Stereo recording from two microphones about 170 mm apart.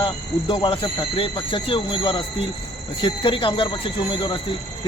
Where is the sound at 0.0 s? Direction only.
30° left (ahead or behind).